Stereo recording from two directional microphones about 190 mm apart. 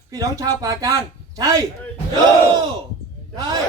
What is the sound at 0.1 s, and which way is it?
Speech, 15° right (ahead or behind).